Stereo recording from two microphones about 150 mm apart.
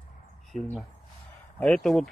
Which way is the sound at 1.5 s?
5° left (ahead or behind).